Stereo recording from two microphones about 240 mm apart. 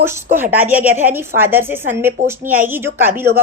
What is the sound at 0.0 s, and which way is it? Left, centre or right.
A woman's voice, centre.